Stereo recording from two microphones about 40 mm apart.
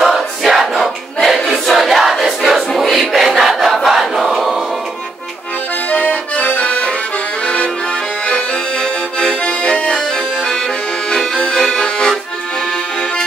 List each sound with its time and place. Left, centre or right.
0.0 s choir: centre
1.7 s crowd: centre
3.5 s battle cry: centre
5.9 s accordion: left
9.2 s accordion: left
11.3 s accordion: left